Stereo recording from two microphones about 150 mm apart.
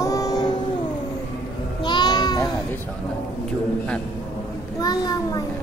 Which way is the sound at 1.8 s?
30° left (ahead or behind).